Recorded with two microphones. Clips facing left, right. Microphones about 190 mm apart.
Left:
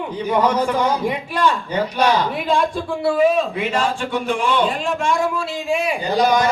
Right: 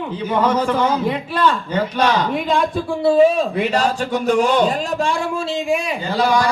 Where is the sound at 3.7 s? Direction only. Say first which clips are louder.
Right 2 dB; 40° right (ahead or behind).